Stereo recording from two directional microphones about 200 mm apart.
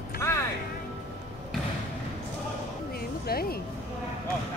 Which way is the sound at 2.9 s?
50° left (ahead or behind).